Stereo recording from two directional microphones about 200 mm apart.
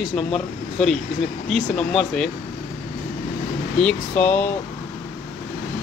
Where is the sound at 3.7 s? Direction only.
5° left (ahead or behind).